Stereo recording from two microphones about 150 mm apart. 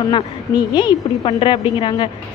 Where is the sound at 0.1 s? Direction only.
30° left (ahead or behind).